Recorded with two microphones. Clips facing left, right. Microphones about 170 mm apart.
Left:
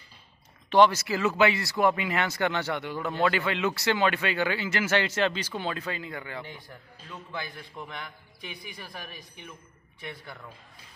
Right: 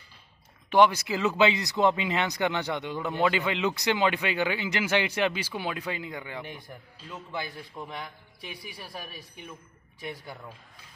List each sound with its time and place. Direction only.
0.7 s a man's voice: 10° right (ahead or behind)
8.7 s speech: 10° right (ahead or behind)